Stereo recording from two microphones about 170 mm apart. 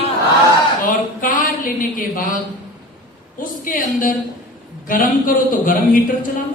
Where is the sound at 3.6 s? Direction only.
55° left (ahead or behind).